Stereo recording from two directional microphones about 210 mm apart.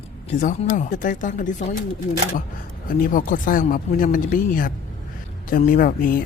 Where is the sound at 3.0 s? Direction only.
40° left (ahead or behind).